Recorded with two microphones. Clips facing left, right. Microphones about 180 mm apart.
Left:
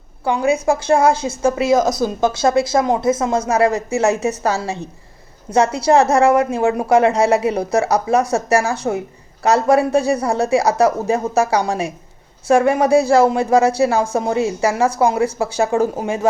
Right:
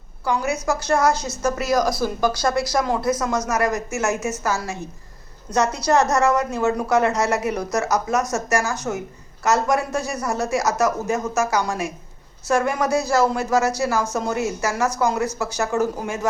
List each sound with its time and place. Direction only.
0.3 s a woman's voice: 25° left (ahead or behind)
6.5 s speech: 15° left (ahead or behind)
6.8 s a woman's voice: 30° left (ahead or behind)
13.7 s a woman's voice: 30° left (ahead or behind)
15.6 s speech: 15° left (ahead or behind)